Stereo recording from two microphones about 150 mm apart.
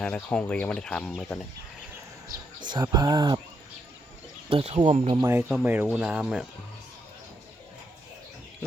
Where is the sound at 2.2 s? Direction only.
30° right (ahead or behind).